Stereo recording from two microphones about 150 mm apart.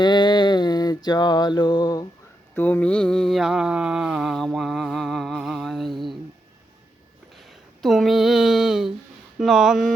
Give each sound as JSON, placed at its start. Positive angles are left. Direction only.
{"t": 0.0, "sound": "mantra", "side_deg": 30}
{"t": 2.6, "sound": "mantra", "side_deg": 10}
{"t": 7.8, "sound": "mantra", "side_deg": 0}